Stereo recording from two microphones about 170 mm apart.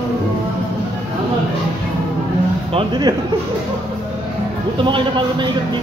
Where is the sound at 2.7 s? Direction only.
25° right (ahead or behind).